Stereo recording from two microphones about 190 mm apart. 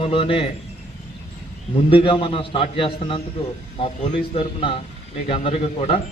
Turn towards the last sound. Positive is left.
turn(degrees=30)  # may be behind; listen again after turning